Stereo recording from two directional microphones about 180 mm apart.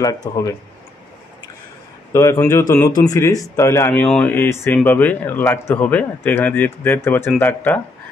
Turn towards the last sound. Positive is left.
turn(degrees=10)  # may be behind; listen again after turning